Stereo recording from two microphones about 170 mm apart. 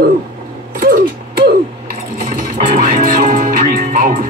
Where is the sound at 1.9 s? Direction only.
50° right (ahead or behind).